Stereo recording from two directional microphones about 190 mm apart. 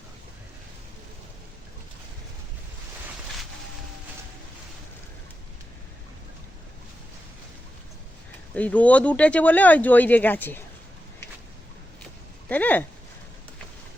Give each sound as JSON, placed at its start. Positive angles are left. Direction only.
{"t": 8.5, "sound": "speech", "side_deg": 10}
{"t": 12.5, "sound": "speech", "side_deg": 10}